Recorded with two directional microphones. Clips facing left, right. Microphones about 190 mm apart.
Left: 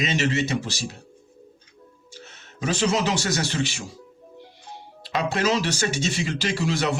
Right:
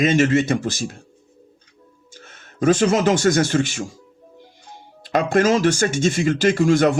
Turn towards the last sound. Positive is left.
turn(degrees=-50)  # may be behind; listen again after turning